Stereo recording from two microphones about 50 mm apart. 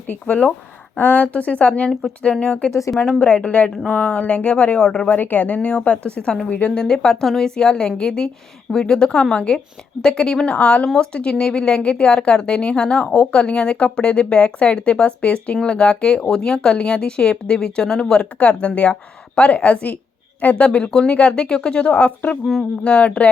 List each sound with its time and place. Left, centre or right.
0.3 s speech: left
0.9 s speech: left
1.9 s a woman's voice: centre
2.2 s speech: centre
5.0 s speech: left
6.7 s a woman's voice: centre
10.4 s speech: left
18.3 s speech: left